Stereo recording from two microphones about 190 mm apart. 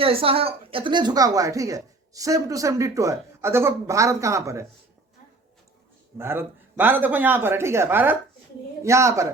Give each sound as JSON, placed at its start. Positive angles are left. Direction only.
{"t": 0.0, "sound": "a woman's voice", "side_deg": -30}
{"t": 6.1, "sound": "a woman's voice", "side_deg": -10}